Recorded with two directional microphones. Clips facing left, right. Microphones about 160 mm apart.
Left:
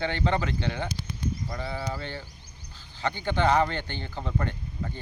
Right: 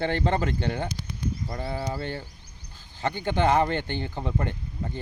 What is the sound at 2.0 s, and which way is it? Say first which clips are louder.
Speech: right 4 dB; 45° right (ahead or behind).